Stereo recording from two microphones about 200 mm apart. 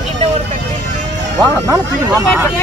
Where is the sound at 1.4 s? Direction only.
15° right (ahead or behind).